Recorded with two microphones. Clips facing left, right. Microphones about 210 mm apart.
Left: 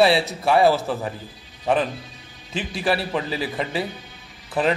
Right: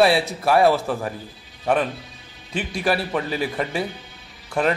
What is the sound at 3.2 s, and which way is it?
Speech, 30° left (ahead or behind).